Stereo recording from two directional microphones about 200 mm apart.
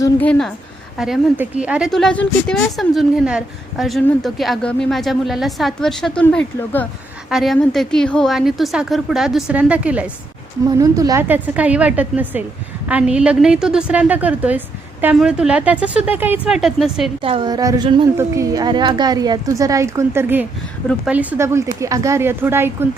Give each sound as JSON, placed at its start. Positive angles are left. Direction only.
{"t": 0.0, "sound": "a woman's voice", "side_deg": 5}
{"t": 17.2, "sound": "speech", "side_deg": -25}